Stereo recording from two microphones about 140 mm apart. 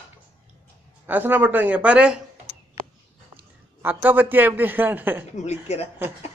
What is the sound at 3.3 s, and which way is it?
A man's voice, 15° right (ahead or behind).